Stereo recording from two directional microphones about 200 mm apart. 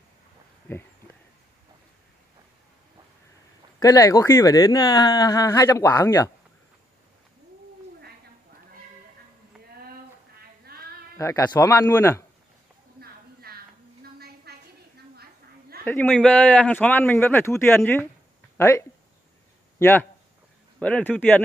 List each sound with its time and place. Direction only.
0.7 s speech: 10° left (ahead or behind)
3.8 s speech: 15° left (ahead or behind)
10.6 s a sound: 50° right (ahead or behind)
11.1 s speech: 15° left (ahead or behind)
13.0 s a sound: 50° right (ahead or behind)
15.8 s speech: 10° left (ahead or behind)